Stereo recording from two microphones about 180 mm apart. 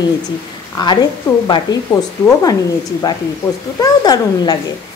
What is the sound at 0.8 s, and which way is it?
Speech, 25° left (ahead or behind).